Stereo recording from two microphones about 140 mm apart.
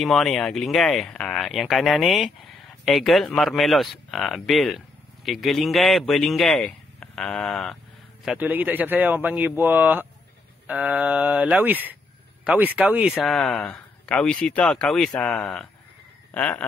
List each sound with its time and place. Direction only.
0.0 s speech: centre (ahead or behind)
8.3 s speech: 10° right (ahead or behind); by 15.7 s 5° left (ahead or behind)
16.3 s a sound: 10° left (ahead or behind)